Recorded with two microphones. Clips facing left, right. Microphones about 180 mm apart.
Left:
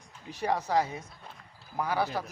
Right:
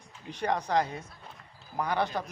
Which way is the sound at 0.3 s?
5° left (ahead or behind).